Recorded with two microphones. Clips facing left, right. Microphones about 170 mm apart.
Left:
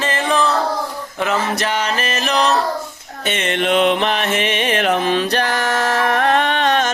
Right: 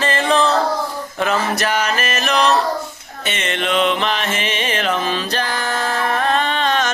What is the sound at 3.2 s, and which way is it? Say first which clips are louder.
Music: left 3 dB; 55° left (ahead or behind).